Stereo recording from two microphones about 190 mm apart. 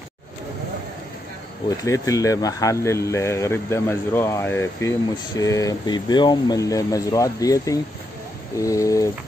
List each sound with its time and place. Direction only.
1.9 s speech: 15° left (ahead or behind)